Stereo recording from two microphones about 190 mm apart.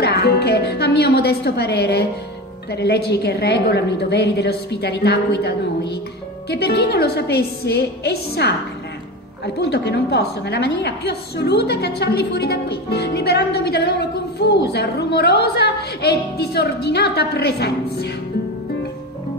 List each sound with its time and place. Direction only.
0.0 s music: 60° left (ahead or behind)
2.7 s a woman's voice: 60° left (ahead or behind)
9.6 s a woman's voice: 60° left (ahead or behind)